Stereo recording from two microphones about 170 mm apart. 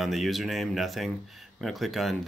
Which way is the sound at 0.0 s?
Centre (ahead or behind).